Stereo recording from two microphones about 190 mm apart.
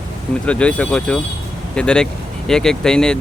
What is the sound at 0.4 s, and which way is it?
Speech, 5° left (ahead or behind).